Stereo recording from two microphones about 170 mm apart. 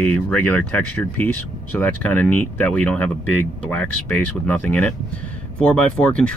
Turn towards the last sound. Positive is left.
turn(degrees=5)  # may be behind; listen again after turning